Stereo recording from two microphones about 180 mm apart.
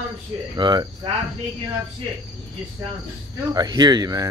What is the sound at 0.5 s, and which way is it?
Speech, 25° right (ahead or behind).